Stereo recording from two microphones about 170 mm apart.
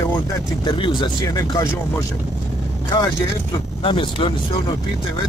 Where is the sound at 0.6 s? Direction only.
30° left (ahead or behind).